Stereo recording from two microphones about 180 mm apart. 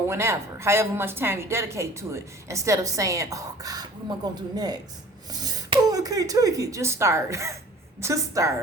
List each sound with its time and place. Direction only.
0.1 s a woman's voice: 15° right (ahead or behind)